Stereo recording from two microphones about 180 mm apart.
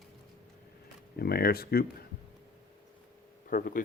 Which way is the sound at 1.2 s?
60° left (ahead or behind).